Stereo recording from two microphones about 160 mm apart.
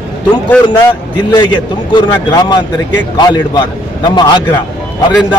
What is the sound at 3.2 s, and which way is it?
A man's voice, 25° left (ahead or behind).